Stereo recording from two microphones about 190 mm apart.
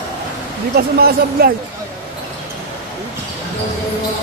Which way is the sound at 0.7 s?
55° right (ahead or behind).